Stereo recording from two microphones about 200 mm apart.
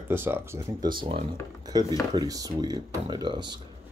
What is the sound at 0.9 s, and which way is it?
Speech, 25° right (ahead or behind).